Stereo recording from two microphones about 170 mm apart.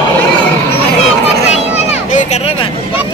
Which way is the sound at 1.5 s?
40° left (ahead or behind).